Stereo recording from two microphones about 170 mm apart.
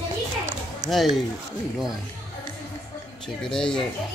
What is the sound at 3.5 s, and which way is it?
Speech, 5° left (ahead or behind).